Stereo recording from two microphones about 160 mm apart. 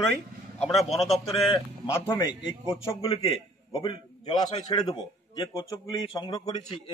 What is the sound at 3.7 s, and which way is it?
A man's voice, 35° left (ahead or behind).